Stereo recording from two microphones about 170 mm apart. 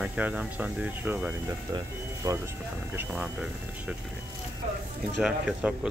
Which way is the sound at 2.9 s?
5° right (ahead or behind).